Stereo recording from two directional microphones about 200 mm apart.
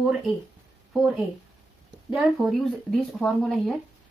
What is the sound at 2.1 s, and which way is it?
Speech, centre (ahead or behind).